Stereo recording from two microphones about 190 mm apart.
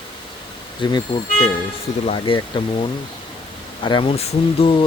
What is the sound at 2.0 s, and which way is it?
Speech, 30° left (ahead or behind).